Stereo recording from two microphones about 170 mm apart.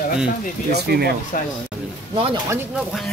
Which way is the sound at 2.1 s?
30° right (ahead or behind).